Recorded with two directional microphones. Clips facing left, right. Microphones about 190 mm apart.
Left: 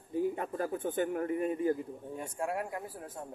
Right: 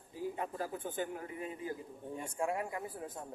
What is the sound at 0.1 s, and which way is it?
Speech, 55° left (ahead or behind).